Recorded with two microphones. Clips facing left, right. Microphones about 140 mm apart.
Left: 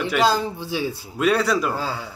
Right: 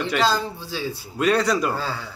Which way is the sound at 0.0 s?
10° left (ahead or behind).